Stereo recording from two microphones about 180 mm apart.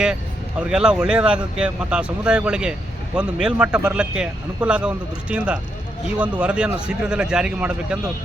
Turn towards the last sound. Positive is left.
turn(degrees=-5)  # may be behind; listen again after turning